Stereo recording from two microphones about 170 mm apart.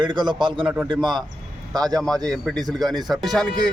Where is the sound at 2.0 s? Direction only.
5° left (ahead or behind).